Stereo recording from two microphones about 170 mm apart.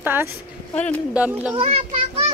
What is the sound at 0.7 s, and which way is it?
Speech, 10° left (ahead or behind).